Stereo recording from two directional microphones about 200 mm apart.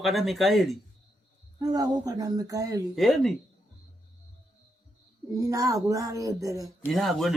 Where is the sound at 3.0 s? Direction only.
Centre (ahead or behind).